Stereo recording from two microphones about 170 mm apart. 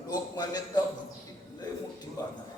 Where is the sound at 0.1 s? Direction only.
25° left (ahead or behind).